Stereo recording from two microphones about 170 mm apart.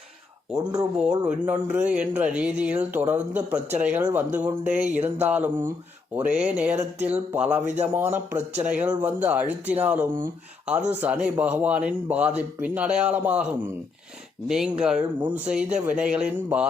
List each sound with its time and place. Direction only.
0.5 s speech: 20° right (ahead or behind)
0.9 s speech: 5° right (ahead or behind)